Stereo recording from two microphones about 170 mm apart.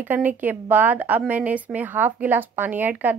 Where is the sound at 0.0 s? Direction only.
10° right (ahead or behind).